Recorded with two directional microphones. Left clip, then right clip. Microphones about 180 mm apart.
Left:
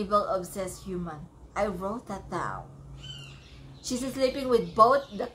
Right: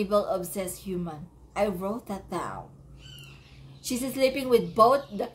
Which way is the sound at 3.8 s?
25° right (ahead or behind).